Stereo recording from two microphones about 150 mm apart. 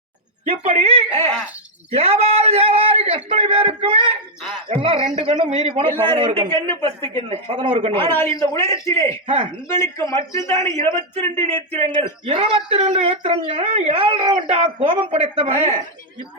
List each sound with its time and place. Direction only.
0.4 s a man's voice: 40° right (ahead or behind)
6.7 s speech: 15° left (ahead or behind)
7.3 s a man's voice: 40° right (ahead or behind)
8.1 s a man's voice: 15° left (ahead or behind)
9.2 s a man's voice: 40° right (ahead or behind)
9.6 s a man's voice: 20° left (ahead or behind)
12.2 s a man's voice: 45° right (ahead or behind)
15.5 s speech: 15° left (ahead or behind)